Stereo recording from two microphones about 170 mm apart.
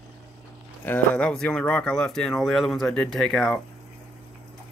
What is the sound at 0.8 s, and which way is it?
Speech, 10° left (ahead or behind).